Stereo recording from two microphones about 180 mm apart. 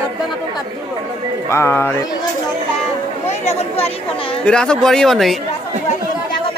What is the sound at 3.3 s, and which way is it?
Speech, 35° left (ahead or behind).